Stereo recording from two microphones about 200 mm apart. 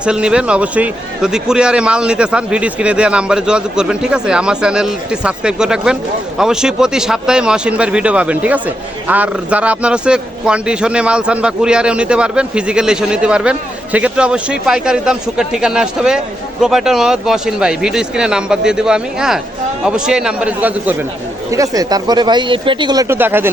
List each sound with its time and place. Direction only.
0.0 s a man's voice: 5° right (ahead or behind)